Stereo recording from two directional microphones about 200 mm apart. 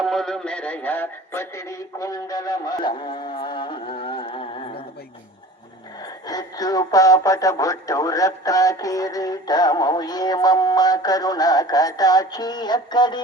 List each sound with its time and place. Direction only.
0.0 s synthetic singing: centre (ahead or behind); by 4.8 s 25° left (ahead or behind)
6.0 s speech: 20° left (ahead or behind)